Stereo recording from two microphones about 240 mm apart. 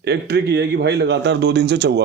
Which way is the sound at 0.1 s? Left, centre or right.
Right.